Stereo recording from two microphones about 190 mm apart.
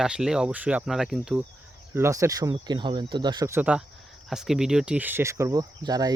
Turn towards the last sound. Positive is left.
turn(degrees=-20)  # may be behind; listen again after turning